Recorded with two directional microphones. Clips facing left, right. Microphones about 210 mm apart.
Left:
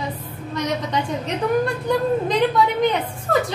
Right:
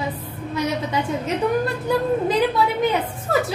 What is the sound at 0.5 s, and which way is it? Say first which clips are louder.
A woman's voice: even; 5° right (ahead or behind).